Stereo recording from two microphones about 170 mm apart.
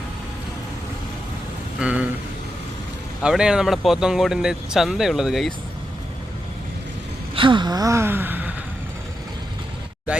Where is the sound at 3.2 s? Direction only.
5° right (ahead or behind).